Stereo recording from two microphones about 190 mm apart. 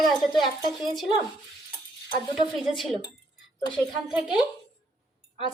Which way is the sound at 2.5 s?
Centre (ahead or behind).